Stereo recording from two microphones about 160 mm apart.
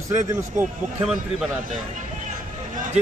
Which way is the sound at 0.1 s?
20° right (ahead or behind).